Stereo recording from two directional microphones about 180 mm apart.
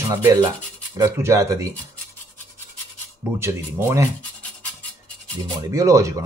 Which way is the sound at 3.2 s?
15° right (ahead or behind).